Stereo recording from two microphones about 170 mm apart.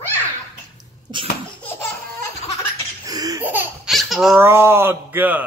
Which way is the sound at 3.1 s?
20° right (ahead or behind).